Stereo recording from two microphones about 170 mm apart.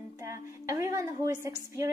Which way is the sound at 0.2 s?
20° right (ahead or behind).